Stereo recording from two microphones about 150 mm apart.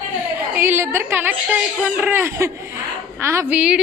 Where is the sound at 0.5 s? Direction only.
15° right (ahead or behind).